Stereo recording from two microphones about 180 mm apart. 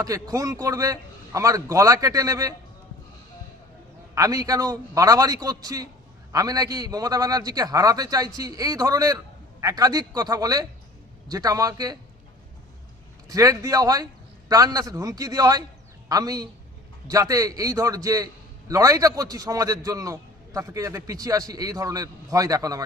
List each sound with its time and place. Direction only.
0.0 s a man's voice: 20° right (ahead or behind)
4.1 s a man's voice: 20° right (ahead or behind)
13.2 s a man's voice: 20° right (ahead or behind)